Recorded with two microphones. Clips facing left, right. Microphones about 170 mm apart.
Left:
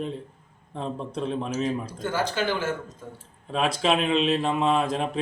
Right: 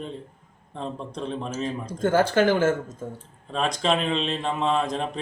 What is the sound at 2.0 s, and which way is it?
Speech, 50° right (ahead or behind).